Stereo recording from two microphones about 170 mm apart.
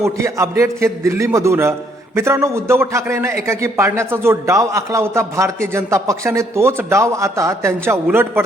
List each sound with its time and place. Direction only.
0.0 s a man's voice: 15° right (ahead or behind)